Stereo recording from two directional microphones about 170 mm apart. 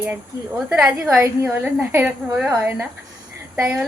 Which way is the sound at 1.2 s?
15° right (ahead or behind).